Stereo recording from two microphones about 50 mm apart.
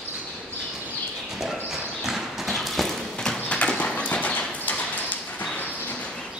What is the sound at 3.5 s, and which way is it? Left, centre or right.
Horse, centre.